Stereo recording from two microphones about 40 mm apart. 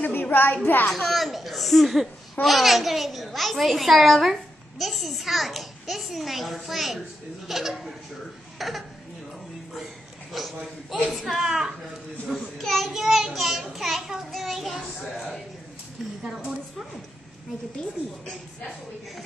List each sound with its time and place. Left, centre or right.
0.1 s a sound: left
0.8 s a woman's voice: centre
10.3 s a woman's voice: centre
11.4 s a child's voice: centre
12.3 s a woman's voice: centre
12.9 s a child's voice: centre
18.2 s a woman's voice: centre